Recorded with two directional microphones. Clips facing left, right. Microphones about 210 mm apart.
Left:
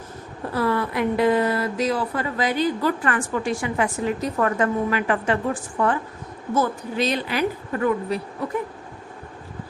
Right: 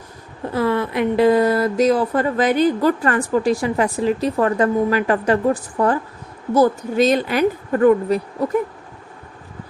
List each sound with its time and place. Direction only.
0.5 s a woman's voice: 25° right (ahead or behind); by 8.2 s 45° right (ahead or behind)